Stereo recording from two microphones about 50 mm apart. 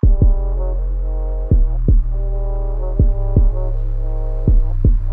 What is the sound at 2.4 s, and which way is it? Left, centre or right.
Music, centre.